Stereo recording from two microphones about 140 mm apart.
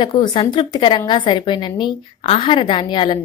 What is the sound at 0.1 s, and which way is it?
A woman's voice, 35° left (ahead or behind).